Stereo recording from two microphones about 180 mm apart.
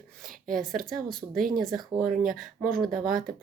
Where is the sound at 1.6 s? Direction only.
Centre (ahead or behind).